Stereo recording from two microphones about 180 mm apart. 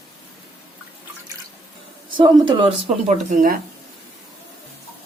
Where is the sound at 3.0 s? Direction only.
45° right (ahead or behind).